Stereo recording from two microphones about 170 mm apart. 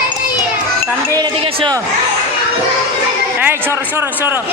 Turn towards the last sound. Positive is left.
turn(degrees=-15)  # may be behind; listen again after turning